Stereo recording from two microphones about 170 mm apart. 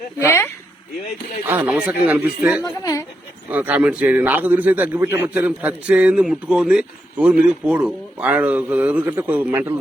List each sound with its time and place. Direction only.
0.2 s speech: 15° left (ahead or behind)
1.5 s a man's voice: 10° right (ahead or behind)
2.6 s a sound: 20° left (ahead or behind)
3.5 s a man's voice: 10° right (ahead or behind)